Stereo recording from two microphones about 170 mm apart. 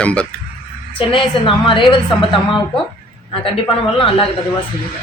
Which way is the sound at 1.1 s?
30° left (ahead or behind).